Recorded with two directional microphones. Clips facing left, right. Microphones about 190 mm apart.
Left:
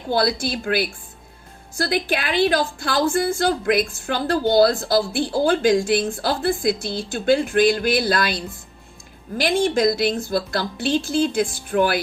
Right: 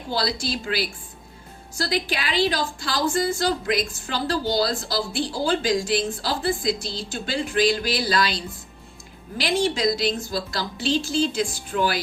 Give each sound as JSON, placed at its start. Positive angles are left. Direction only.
{"t": 0.1, "sound": "a woman's voice", "side_deg": 55}